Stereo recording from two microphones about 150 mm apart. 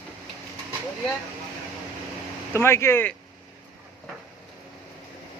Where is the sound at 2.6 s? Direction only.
15° left (ahead or behind).